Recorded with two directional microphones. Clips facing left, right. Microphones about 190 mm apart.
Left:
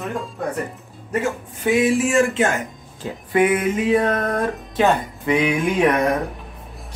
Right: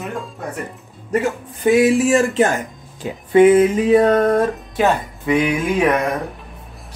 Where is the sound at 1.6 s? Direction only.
35° right (ahead or behind).